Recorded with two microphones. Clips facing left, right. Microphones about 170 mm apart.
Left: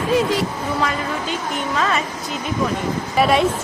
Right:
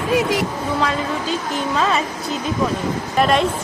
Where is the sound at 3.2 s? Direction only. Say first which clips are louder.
Even; 5° left (ahead or behind).